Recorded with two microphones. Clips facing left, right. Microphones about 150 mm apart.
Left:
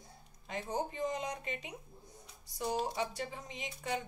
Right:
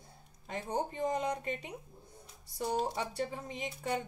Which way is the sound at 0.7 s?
55° right (ahead or behind).